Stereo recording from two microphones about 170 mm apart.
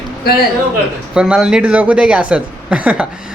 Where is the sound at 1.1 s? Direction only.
5° right (ahead or behind).